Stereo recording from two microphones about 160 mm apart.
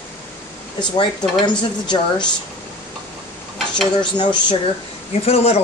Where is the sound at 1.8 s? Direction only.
30° left (ahead or behind).